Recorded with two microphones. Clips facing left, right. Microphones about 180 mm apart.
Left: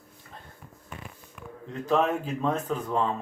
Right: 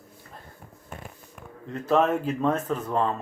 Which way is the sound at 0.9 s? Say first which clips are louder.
Right 2 dB; 45° right (ahead or behind).